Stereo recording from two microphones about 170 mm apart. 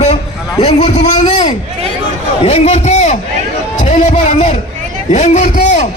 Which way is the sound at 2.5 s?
40° left (ahead or behind).